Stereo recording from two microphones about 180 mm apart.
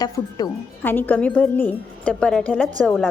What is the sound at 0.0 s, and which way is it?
Speech, 20° left (ahead or behind).